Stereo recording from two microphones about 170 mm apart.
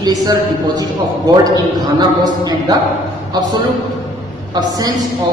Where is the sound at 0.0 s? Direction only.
25° right (ahead or behind).